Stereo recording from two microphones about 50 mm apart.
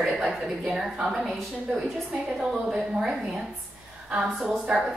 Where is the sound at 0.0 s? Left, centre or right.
Centre.